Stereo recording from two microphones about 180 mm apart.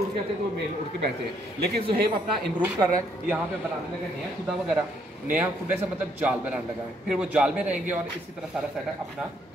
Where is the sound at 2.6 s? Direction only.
15° right (ahead or behind).